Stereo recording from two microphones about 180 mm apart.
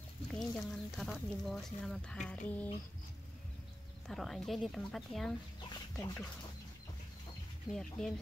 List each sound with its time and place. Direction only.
0.4 s speech: centre (ahead or behind)
4.1 s speech: centre (ahead or behind)
5.7 s music: 20° left (ahead or behind)
7.7 s speech: 5° left (ahead or behind)